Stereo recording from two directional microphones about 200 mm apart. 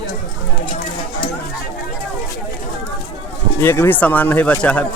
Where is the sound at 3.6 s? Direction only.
10° left (ahead or behind).